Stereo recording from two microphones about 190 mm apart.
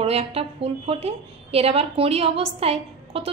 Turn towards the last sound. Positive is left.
turn(degrees=-30)  # may be behind; listen again after turning